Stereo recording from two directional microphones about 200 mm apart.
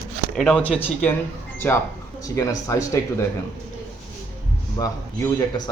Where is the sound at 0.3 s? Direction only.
5° left (ahead or behind).